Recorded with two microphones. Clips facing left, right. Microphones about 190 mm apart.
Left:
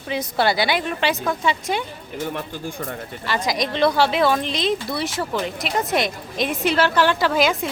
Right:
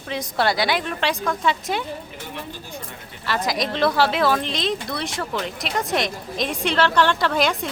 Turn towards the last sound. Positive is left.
turn(degrees=0)  # may be behind; listen again after turning